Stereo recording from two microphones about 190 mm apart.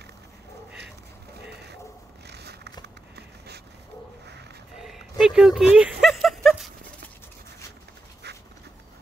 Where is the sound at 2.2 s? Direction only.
60° right (ahead or behind).